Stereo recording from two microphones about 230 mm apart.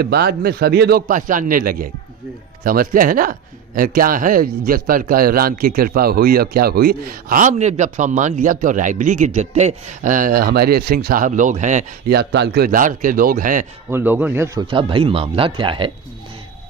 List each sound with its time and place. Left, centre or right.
0.0 s a man's voice: right
13.8 s a man's voice: centre